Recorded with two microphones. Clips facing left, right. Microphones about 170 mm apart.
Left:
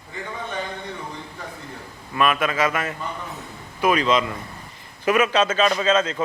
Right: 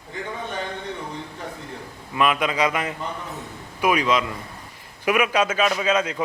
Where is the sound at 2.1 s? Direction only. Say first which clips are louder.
Even; 15° right (ahead or behind).